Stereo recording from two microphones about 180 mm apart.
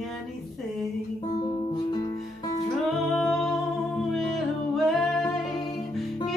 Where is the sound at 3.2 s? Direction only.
Centre (ahead or behind).